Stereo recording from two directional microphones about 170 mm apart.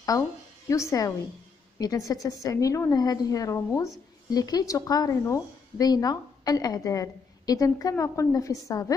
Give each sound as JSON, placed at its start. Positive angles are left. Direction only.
{"t": 0.7, "sound": "a woman's voice", "side_deg": 20}